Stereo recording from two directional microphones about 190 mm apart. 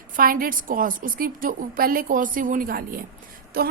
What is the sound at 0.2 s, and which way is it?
A woman's voice, 50° right (ahead or behind).